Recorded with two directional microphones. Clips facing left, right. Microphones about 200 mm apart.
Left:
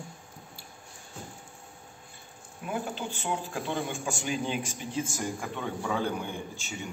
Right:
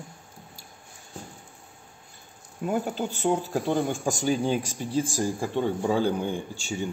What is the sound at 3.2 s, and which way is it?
Speech, 40° right (ahead or behind).